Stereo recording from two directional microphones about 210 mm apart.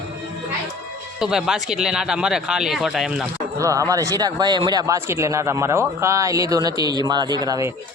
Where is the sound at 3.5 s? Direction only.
15° right (ahead or behind).